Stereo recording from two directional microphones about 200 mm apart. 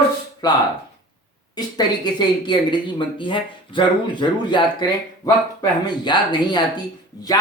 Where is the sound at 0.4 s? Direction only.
20° left (ahead or behind).